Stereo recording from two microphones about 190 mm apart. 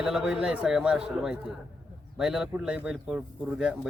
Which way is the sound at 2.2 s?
Centre (ahead or behind).